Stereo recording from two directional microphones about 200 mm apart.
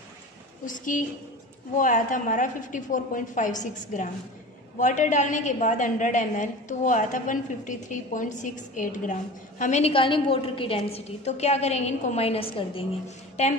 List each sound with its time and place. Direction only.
0.7 s a woman's voice: 40° left (ahead or behind)